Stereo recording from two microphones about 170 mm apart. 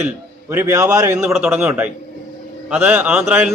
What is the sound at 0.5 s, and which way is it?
Speech, 15° right (ahead or behind).